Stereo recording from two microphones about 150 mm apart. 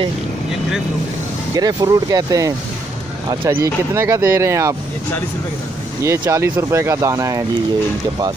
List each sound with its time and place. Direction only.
1.5 s speech: 25° right (ahead or behind)
6.0 s speech: 20° right (ahead or behind)